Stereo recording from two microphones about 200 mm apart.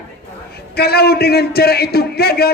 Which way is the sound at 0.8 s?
50° left (ahead or behind).